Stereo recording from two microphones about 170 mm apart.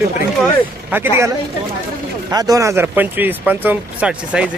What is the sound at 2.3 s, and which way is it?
Speech, 20° right (ahead or behind).